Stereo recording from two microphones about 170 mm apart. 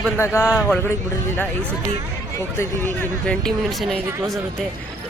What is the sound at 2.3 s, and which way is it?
Speech, 15° left (ahead or behind).